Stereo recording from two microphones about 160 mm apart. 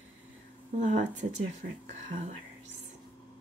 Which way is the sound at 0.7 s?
50° right (ahead or behind).